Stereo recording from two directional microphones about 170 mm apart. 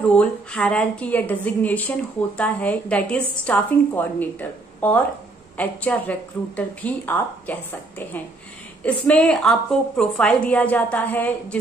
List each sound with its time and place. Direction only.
0.1 s a woman's voice: 5° left (ahead or behind)
8.8 s a woman's voice: 5° left (ahead or behind)